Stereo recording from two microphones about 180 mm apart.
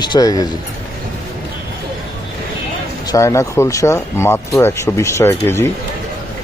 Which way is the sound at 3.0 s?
15° left (ahead or behind).